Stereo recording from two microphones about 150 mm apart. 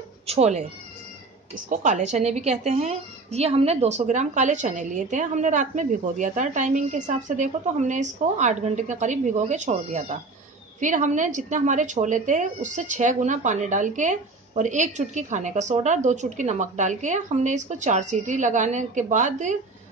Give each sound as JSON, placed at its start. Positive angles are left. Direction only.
{"t": 0.3, "sound": "a woman's voice", "side_deg": -45}
{"t": 1.7, "sound": "a woman's voice", "side_deg": -55}